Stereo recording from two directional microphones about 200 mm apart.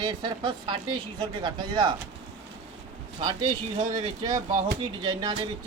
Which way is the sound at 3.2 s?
25° right (ahead or behind).